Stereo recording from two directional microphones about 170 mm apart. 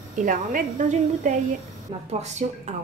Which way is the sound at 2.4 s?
45° right (ahead or behind).